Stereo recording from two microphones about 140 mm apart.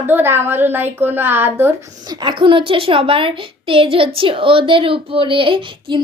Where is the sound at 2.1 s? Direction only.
30° right (ahead or behind).